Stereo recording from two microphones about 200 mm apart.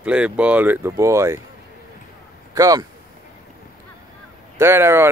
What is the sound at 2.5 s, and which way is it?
Speech, 15° right (ahead or behind).